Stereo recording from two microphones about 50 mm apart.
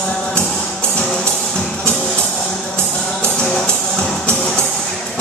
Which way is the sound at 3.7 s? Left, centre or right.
Centre.